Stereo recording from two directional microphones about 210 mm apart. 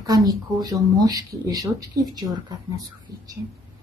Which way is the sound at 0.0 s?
20° right (ahead or behind).